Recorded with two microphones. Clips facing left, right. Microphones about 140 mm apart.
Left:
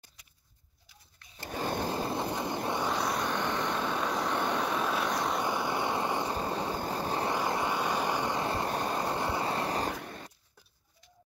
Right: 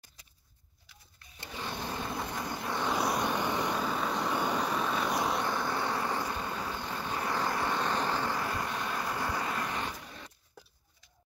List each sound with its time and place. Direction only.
1.4 s a sound: 45° left (ahead or behind)
1.9 s a sound: 30° left (ahead or behind)
2.9 s vehicle: 10° right (ahead or behind)
5.4 s vehicle: 15° left (ahead or behind)
6.3 s vehicle: 30° left (ahead or behind)
7.2 s vehicle: 20° left (ahead or behind); by 9.9 s 35° left (ahead or behind)